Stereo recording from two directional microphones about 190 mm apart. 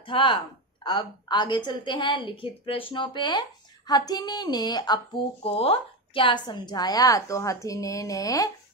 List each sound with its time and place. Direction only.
0.0 s a woman's voice: 25° left (ahead or behind)